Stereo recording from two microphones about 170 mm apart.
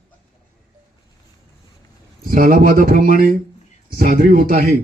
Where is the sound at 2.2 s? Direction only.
55° right (ahead or behind).